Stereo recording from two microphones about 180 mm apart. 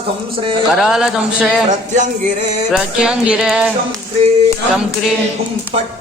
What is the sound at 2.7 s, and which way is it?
Music, 5° right (ahead or behind).